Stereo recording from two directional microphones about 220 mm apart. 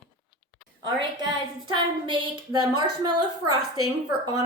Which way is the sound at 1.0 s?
20° right (ahead or behind).